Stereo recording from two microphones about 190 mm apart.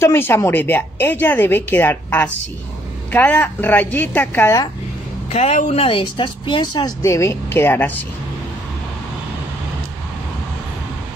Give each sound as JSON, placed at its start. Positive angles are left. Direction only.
{"t": 0.0, "sound": "a woman's voice", "side_deg": 10}
{"t": 5.3, "sound": "speech", "side_deg": 35}